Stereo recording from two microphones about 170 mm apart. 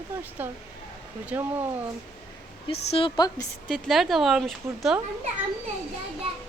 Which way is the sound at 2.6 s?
35° left (ahead or behind).